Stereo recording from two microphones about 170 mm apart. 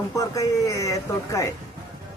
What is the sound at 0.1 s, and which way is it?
Speech, 20° left (ahead or behind).